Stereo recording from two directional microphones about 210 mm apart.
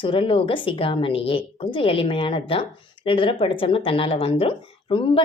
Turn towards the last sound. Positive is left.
turn(degrees=25)  # may be behind; listen again after turning